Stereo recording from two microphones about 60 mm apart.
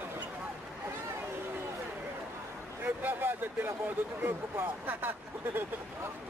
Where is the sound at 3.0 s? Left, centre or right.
Right.